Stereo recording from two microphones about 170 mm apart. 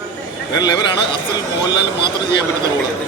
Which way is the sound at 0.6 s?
25° left (ahead or behind).